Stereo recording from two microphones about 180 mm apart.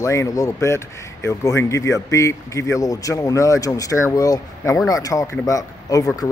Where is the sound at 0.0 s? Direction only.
15° left (ahead or behind).